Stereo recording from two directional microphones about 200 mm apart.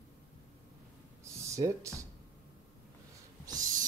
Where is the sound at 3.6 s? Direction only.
40° right (ahead or behind).